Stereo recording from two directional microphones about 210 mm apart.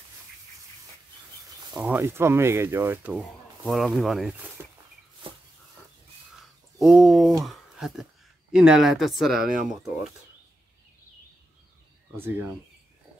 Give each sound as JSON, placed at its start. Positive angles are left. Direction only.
{"t": 1.7, "sound": "speech", "side_deg": -5}
{"t": 3.2, "sound": "speech", "side_deg": 0}
{"t": 4.6, "sound": "walk", "side_deg": -10}
{"t": 5.2, "sound": "a sound", "side_deg": -25}
{"t": 6.4, "sound": "a sound", "side_deg": 0}
{"t": 8.5, "sound": "speech", "side_deg": -5}
{"t": 9.4, "sound": "speech", "side_deg": -40}
{"t": 9.7, "sound": "speech", "side_deg": 0}
{"t": 12.2, "sound": "speech", "side_deg": -10}